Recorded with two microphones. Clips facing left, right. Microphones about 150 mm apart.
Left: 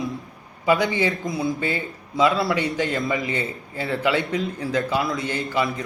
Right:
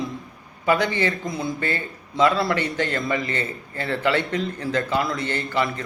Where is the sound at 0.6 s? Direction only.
15° left (ahead or behind).